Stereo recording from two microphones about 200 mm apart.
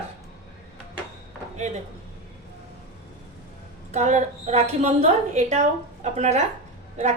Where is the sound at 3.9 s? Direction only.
35° right (ahead or behind).